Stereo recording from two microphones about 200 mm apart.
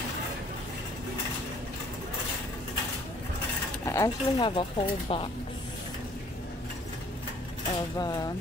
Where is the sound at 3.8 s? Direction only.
15° left (ahead or behind).